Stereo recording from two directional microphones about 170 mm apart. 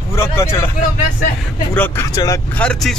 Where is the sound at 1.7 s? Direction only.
15° left (ahead or behind).